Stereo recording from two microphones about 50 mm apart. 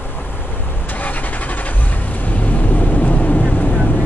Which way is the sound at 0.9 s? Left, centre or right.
Left.